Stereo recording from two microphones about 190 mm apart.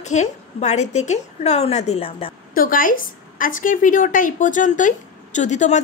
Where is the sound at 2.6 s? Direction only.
45° left (ahead or behind).